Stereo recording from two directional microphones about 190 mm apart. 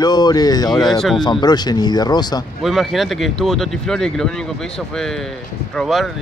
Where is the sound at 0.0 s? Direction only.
20° left (ahead or behind).